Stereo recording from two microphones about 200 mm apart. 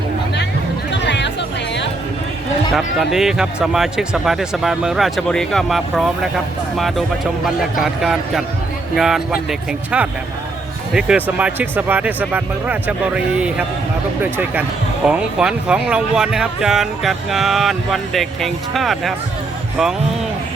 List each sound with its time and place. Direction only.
0.9 s music: 65° left (ahead or behind)
2.7 s speech: centre (ahead or behind)